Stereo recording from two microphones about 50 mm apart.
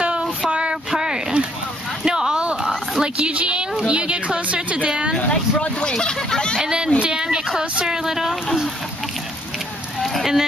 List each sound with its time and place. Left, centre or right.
0.0 s a sound: centre
3.0 s speech: right
5.1 s speech: left
6.6 s a sound: centre
7.0 s speech: centre
10.0 s speech: centre